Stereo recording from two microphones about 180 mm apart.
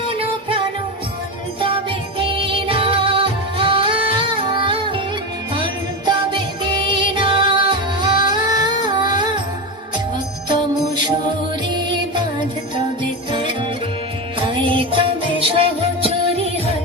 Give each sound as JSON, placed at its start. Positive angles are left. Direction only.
{"t": 0.2, "sound": "music", "side_deg": -30}
{"t": 1.6, "sound": "music", "side_deg": -30}
{"t": 6.1, "sound": "music", "side_deg": -25}
{"t": 10.5, "sound": "music", "side_deg": -25}
{"t": 14.3, "sound": "music", "side_deg": -30}